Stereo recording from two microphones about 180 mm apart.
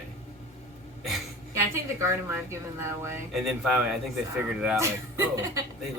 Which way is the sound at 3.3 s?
Centre (ahead or behind).